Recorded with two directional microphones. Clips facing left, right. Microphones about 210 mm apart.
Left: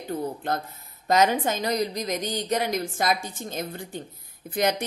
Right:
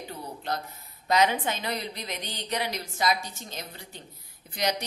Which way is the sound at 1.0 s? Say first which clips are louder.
Left 3 dB; 45° left (ahead or behind).